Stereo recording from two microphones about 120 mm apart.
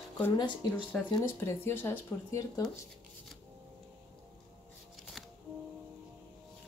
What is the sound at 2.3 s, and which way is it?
Speech, 30° left (ahead or behind).